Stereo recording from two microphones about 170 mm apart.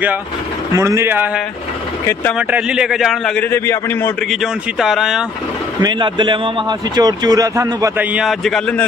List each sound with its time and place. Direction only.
0.7 s a man's voice: 15° right (ahead or behind); by 3.4 s centre (ahead or behind)
3.4 s a man's voice: 15° left (ahead or behind)
4.3 s a man's voice: centre (ahead or behind)
5.8 s speech: 25° right (ahead or behind)
8.1 s a man's voice: centre (ahead or behind)